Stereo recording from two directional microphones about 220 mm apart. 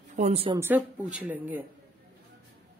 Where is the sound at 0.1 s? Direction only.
30° right (ahead or behind).